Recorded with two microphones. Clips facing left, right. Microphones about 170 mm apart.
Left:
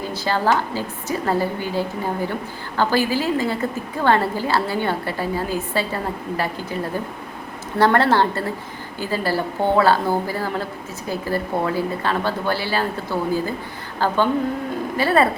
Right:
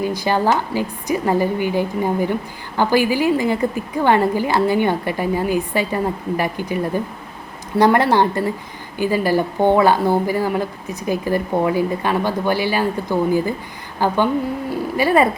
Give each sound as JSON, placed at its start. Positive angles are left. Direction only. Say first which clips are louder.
{"t": 0.0, "sound": "speech", "louder": "right 3 dB", "side_deg": -15}